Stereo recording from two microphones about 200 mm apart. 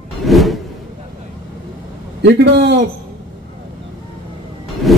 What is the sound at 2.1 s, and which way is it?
Speech, 60° right (ahead or behind).